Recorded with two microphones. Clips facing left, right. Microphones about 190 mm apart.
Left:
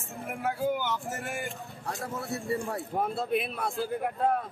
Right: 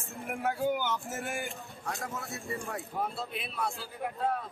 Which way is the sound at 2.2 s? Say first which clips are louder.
Left 6 dB; 35° left (ahead or behind).